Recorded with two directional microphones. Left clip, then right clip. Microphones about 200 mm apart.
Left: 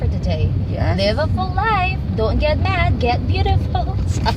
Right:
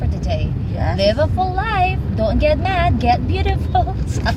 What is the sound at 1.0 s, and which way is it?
Speech, 20° right (ahead or behind).